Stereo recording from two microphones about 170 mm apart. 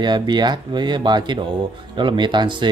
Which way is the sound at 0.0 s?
25° right (ahead or behind).